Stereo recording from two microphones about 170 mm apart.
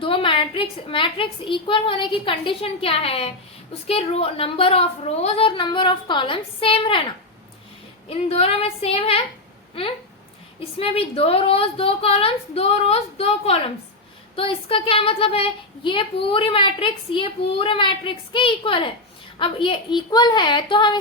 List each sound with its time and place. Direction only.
0.0 s a woman's voice: 30° left (ahead or behind)
8.1 s a woman's voice: 35° left (ahead or behind)
10.8 s a woman's voice: 35° left (ahead or behind)